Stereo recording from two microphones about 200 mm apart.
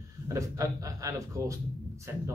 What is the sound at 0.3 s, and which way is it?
A man's voice, 15° right (ahead or behind).